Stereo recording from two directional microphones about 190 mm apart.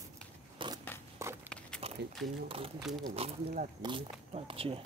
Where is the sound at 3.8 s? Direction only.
25° right (ahead or behind).